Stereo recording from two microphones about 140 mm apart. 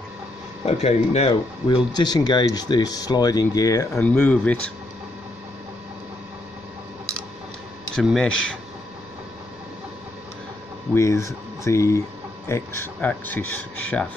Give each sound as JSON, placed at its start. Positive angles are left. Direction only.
{"t": 0.7, "sound": "speech", "side_deg": 50}
{"t": 1.7, "sound": "speech", "side_deg": 30}
{"t": 4.0, "sound": "speech", "side_deg": 10}
{"t": 7.9, "sound": "speech", "side_deg": 5}
{"t": 11.0, "sound": "speech", "side_deg": 20}